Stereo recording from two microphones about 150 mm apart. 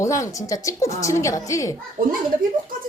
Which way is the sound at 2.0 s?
65° right (ahead or behind).